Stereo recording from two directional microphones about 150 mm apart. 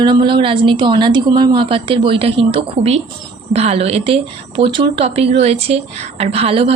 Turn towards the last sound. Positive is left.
turn(degrees=-40)  # may be behind; listen again after turning